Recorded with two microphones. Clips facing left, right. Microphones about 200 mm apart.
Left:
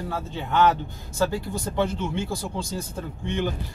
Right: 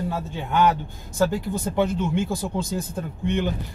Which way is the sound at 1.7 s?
15° right (ahead or behind).